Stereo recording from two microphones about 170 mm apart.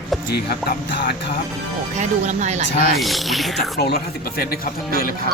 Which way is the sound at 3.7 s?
65° left (ahead or behind).